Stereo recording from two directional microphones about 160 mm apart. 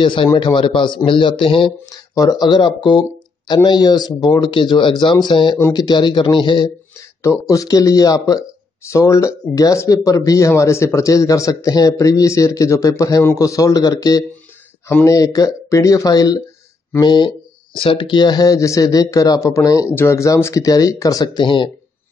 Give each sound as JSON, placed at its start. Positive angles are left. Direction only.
{"t": 0.0, "sound": "speech", "side_deg": 30}
{"t": 1.9, "sound": "a man's voice", "side_deg": 20}
{"t": 7.2, "sound": "a man's voice", "side_deg": 20}